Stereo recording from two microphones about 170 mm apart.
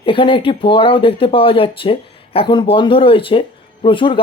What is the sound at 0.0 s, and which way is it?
Speech, 30° left (ahead or behind).